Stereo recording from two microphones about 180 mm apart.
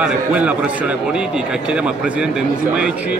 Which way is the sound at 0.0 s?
10° right (ahead or behind).